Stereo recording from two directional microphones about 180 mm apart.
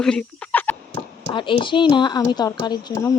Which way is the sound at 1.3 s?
25° left (ahead or behind).